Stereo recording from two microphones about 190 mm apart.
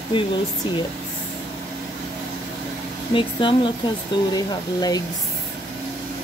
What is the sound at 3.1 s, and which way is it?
Speech, 25° left (ahead or behind).